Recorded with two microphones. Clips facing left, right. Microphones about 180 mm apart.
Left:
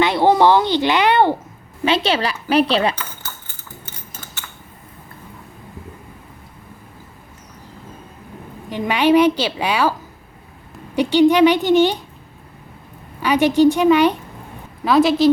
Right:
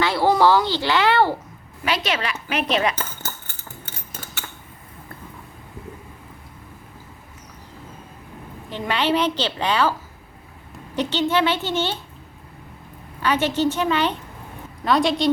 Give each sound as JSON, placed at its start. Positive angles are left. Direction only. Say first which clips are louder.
{"t": 0.0, "sound": "a woman's voice", "louder": "left 4 dB", "side_deg": 20}
{"t": 8.7, "sound": "a woman's voice", "louder": "left 7 dB", "side_deg": 15}
{"t": 10.9, "sound": "a woman's voice", "louder": "left 8 dB", "side_deg": 10}
{"t": 13.2, "sound": "a woman's voice", "louder": "left 7 dB", "side_deg": 15}